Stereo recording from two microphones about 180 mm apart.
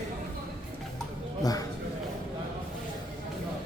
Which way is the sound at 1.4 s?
20° left (ahead or behind).